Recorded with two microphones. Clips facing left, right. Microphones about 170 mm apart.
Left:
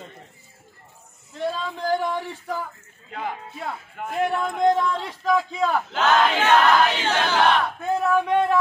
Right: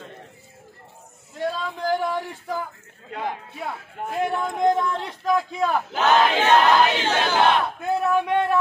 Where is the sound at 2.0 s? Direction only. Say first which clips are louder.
Even; 5° right (ahead or behind).